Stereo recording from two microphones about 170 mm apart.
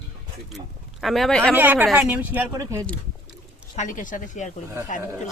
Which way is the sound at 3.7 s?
50° left (ahead or behind).